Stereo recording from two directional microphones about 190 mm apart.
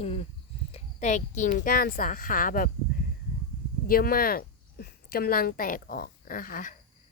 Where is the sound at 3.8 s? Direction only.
50° left (ahead or behind).